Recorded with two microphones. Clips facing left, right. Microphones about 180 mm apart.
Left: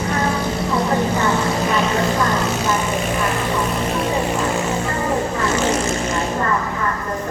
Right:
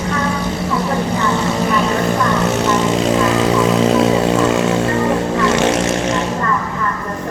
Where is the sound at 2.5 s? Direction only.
75° right (ahead or behind).